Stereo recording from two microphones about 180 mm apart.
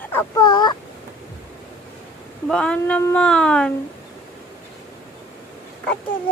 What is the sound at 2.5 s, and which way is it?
Speech, 5° left (ahead or behind).